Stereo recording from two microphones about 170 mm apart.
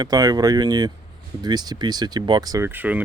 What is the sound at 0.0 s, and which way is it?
Speech, 20° right (ahead or behind).